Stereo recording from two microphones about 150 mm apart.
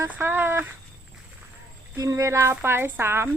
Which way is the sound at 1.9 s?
20° right (ahead or behind).